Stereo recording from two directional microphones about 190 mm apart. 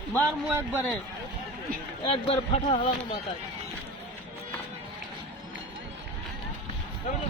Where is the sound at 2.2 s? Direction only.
30° left (ahead or behind).